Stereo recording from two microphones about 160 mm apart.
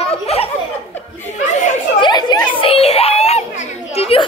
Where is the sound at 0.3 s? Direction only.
40° left (ahead or behind).